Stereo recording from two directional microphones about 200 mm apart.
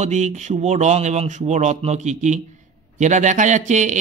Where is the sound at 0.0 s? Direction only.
35° right (ahead or behind).